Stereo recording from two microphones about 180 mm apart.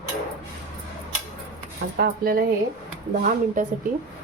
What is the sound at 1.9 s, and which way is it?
Speech, 55° right (ahead or behind).